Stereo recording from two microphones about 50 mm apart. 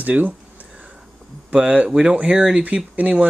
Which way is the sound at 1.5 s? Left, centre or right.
Right.